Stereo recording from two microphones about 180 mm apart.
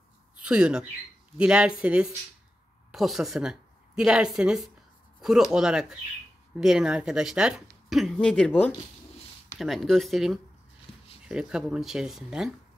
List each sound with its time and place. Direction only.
0.4 s a woman's voice: 5° right (ahead or behind)
10.9 s a sound: 35° left (ahead or behind)
11.2 s speech: 5° right (ahead or behind)